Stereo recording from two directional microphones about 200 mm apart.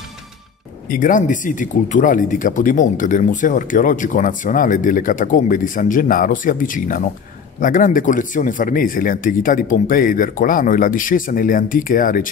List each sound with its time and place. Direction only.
0.8 s speech: 40° left (ahead or behind)